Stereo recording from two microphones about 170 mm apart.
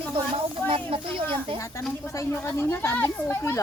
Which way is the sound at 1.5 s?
20° left (ahead or behind).